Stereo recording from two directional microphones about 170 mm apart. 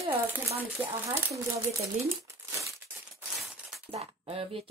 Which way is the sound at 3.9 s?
35° right (ahead or behind).